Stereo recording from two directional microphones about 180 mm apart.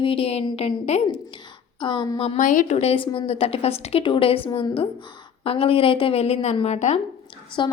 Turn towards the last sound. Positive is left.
turn(degrees=25)  # may be behind; listen again after turning